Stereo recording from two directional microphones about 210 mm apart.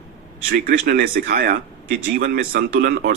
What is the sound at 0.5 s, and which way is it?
Speech, 45° right (ahead or behind).